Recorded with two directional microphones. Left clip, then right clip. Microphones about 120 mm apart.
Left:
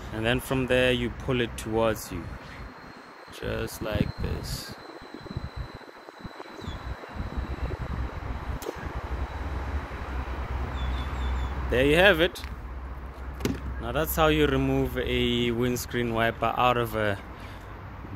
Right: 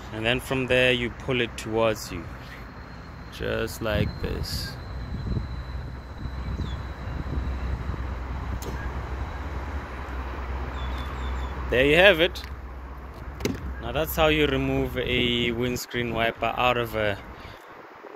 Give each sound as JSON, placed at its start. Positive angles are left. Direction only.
{"t": 0.1, "sound": "speech", "side_deg": 25}
{"t": 3.5, "sound": "speech", "side_deg": -60}
{"t": 11.7, "sound": "speech", "side_deg": 10}
{"t": 13.8, "sound": "speech", "side_deg": 30}
{"t": 15.0, "sound": "speech", "side_deg": 15}